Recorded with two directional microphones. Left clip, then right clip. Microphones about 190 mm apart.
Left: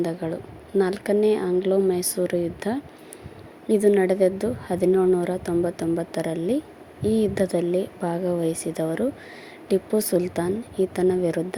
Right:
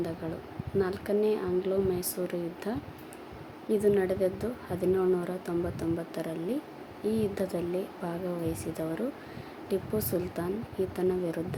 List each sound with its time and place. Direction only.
0.2 s a woman's voice: 35° left (ahead or behind)